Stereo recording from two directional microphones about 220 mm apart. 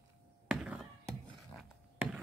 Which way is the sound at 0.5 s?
5° right (ahead or behind).